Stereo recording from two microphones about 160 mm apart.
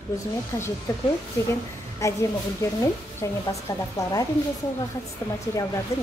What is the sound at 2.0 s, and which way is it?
A woman's voice, 20° left (ahead or behind).